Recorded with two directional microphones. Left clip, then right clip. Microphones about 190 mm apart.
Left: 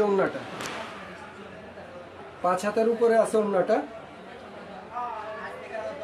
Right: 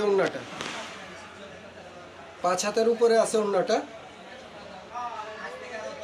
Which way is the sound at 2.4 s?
10° left (ahead or behind).